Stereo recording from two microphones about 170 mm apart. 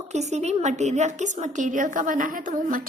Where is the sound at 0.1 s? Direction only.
40° right (ahead or behind).